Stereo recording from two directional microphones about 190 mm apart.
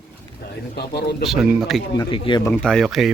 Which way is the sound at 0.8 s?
60° left (ahead or behind).